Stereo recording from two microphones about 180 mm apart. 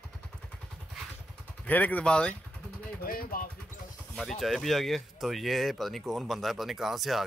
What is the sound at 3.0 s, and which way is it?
Speech, 55° left (ahead or behind).